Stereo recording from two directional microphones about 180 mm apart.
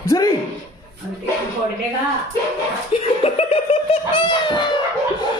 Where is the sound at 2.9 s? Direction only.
30° left (ahead or behind).